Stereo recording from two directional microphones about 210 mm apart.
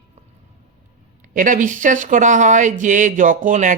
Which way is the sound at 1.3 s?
40° right (ahead or behind).